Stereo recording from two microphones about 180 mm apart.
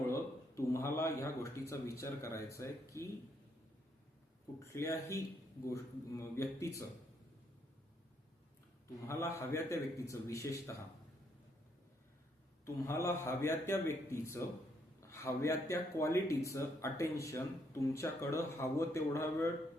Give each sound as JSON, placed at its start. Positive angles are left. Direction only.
{"t": 0.1, "sound": "speech", "side_deg": 15}
{"t": 4.6, "sound": "speech", "side_deg": 15}
{"t": 9.0, "sound": "speech", "side_deg": 15}
{"t": 12.6, "sound": "speech", "side_deg": 15}
{"t": 15.0, "sound": "a sound", "side_deg": 15}
{"t": 15.7, "sound": "speech", "side_deg": 15}